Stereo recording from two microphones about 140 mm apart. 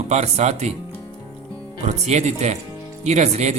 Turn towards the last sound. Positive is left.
turn(degrees=-55)  # may be behind; listen again after turning